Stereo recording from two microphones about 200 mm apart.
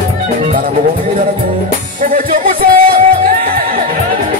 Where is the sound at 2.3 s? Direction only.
45° right (ahead or behind).